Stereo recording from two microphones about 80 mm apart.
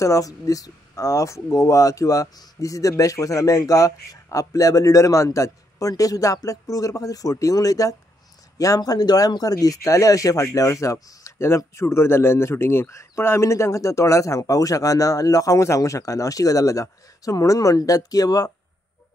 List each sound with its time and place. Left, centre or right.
0.0 s speech: left